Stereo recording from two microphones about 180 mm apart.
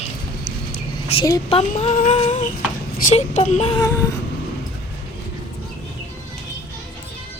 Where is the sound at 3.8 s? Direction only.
15° left (ahead or behind).